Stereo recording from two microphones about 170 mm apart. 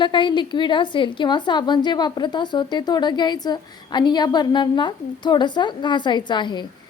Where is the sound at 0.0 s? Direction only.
30° left (ahead or behind).